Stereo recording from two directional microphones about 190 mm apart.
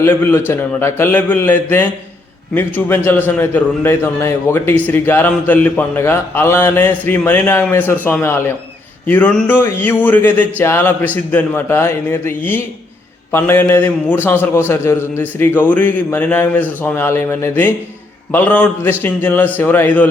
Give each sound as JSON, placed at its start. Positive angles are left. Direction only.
{"t": 0.0, "sound": "a man's voice", "side_deg": 10}